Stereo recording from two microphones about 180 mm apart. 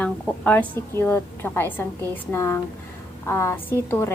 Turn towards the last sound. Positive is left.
turn(degrees=15)  # may be behind; listen again after turning